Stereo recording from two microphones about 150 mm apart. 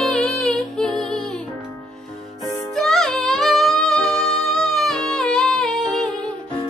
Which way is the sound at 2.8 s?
5° left (ahead or behind).